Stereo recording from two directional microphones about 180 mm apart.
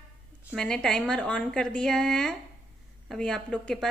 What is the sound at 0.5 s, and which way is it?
A woman's voice, 5° left (ahead or behind).